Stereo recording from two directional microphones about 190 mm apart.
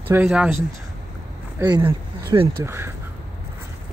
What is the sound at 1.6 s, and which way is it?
Speech, 20° right (ahead or behind).